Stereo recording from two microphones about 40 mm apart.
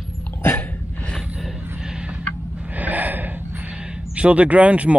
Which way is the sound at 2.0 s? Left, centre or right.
Right.